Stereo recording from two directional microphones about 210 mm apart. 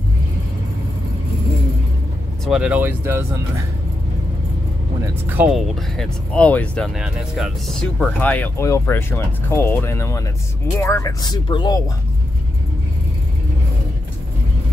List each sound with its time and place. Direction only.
2.4 s speech: 5° right (ahead or behind)
5.2 s speech: 10° right (ahead or behind); by 11.8 s 20° left (ahead or behind)